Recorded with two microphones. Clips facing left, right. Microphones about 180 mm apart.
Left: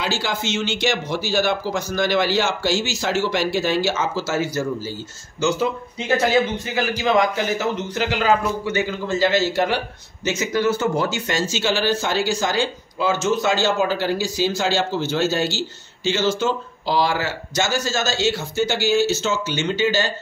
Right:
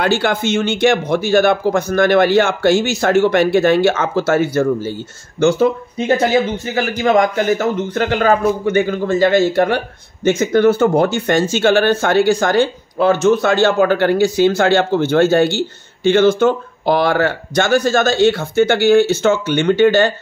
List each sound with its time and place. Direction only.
0.0 s speech: 60° right (ahead or behind)